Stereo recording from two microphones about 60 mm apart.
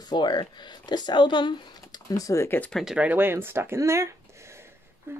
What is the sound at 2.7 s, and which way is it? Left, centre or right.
Speech, centre.